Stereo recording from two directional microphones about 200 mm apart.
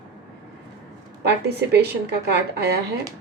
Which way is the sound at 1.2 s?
55° right (ahead or behind).